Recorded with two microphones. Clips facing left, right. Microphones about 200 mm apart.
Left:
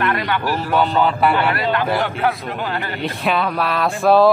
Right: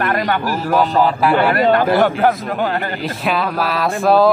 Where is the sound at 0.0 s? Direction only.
45° right (ahead or behind).